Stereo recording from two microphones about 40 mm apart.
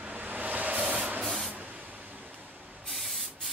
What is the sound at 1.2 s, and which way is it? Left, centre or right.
Spray, centre.